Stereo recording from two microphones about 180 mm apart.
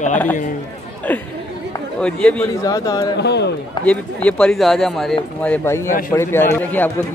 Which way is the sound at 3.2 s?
70° left (ahead or behind).